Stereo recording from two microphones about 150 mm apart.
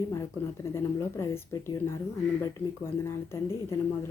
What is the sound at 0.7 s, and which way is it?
Speech, 20° left (ahead or behind).